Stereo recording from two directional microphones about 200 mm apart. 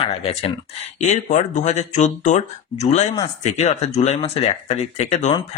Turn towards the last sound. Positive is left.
turn(degrees=35)  # may be behind; listen again after turning